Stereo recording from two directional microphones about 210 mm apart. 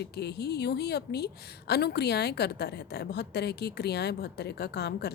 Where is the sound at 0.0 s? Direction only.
50° left (ahead or behind).